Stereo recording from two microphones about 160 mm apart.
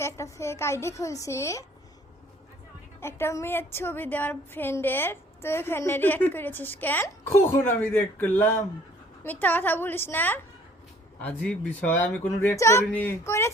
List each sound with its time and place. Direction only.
0.0 s speech: 15° left (ahead or behind)
3.0 s speech: 15° left (ahead or behind)